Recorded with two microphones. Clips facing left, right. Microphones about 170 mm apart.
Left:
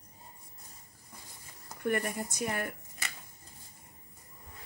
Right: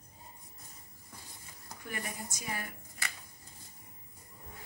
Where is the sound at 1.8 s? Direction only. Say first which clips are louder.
Left 10 dB; 60° left (ahead or behind).